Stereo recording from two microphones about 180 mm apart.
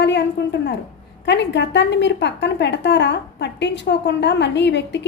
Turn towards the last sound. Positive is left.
turn(degrees=75)  # may be behind; listen again after turning